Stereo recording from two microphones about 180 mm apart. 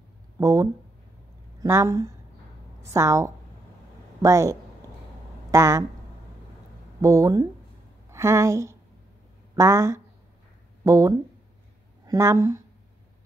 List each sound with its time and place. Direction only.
0.4 s a woman's voice: 20° right (ahead or behind)
7.0 s a woman's voice: 20° right (ahead or behind)